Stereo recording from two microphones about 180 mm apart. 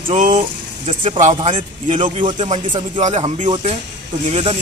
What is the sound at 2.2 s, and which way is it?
Speech, 25° right (ahead or behind).